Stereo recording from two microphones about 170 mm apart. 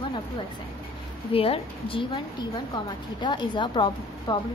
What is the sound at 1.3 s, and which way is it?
Speech, 35° left (ahead or behind).